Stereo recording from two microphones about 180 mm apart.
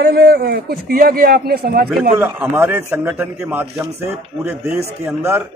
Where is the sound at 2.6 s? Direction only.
10° right (ahead or behind).